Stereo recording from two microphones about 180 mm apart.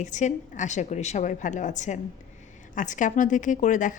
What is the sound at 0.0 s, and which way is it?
A woman's voice, 45° left (ahead or behind).